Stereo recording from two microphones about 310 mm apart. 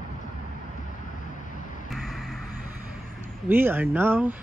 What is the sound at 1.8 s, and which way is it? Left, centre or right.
Vehicle, centre.